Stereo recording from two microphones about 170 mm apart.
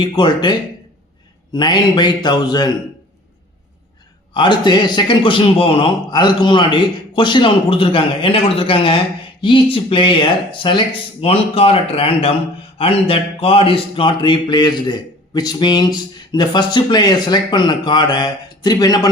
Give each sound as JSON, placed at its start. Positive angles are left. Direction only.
{"t": 0.0, "sound": "speech", "side_deg": 25}
{"t": 1.5, "sound": "speech", "side_deg": 25}
{"t": 4.4, "sound": "speech", "side_deg": 25}